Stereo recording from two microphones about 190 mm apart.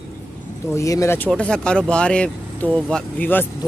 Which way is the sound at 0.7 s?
15° left (ahead or behind).